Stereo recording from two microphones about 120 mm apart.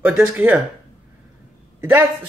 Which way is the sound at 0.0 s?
15° right (ahead or behind).